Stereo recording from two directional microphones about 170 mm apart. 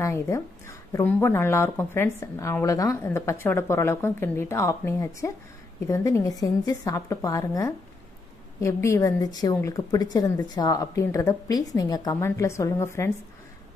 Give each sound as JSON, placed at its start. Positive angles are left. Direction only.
{"t": 0.0, "sound": "a woman's voice", "side_deg": 15}